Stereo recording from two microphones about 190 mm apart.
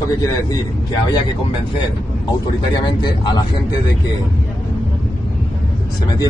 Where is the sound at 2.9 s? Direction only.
25° left (ahead or behind).